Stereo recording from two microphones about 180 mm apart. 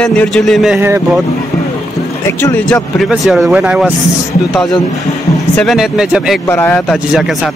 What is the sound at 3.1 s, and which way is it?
Speech, centre (ahead or behind).